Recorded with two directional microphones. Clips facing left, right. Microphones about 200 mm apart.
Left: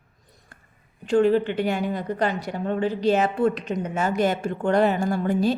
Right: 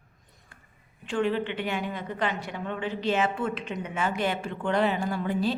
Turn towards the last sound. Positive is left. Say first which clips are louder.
# left 5 dB
turn(degrees=45)  # may be behind; listen again after turning